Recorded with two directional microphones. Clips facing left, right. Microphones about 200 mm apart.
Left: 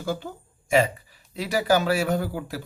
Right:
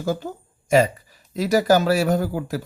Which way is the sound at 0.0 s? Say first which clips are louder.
Right 4 dB; 45° right (ahead or behind).